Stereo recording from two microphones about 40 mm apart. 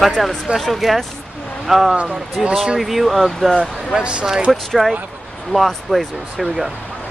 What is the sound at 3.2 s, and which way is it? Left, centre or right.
Speech, centre.